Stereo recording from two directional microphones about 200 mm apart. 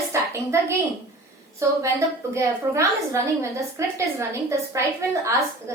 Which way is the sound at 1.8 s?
15° right (ahead or behind).